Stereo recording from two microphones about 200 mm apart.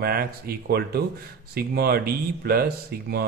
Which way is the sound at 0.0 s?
50° right (ahead or behind).